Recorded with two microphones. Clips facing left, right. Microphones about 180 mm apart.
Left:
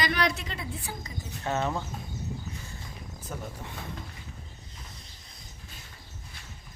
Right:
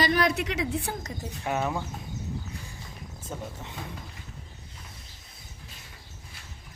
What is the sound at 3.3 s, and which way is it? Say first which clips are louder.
Speech: right 2 dB; 25° right (ahead or behind).